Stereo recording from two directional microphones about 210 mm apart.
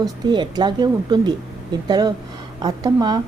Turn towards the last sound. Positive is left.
turn(degrees=-20)  # may be behind; listen again after turning